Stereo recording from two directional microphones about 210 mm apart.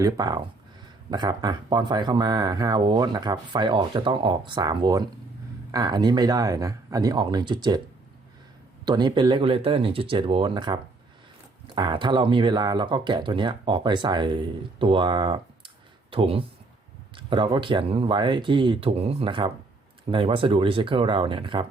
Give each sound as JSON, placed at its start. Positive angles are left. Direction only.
{"t": 0.0, "sound": "speech", "side_deg": -20}
{"t": 8.8, "sound": "speech", "side_deg": -20}